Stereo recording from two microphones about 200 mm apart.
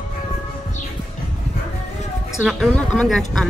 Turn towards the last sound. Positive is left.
turn(degrees=0)  # may be behind; listen again after turning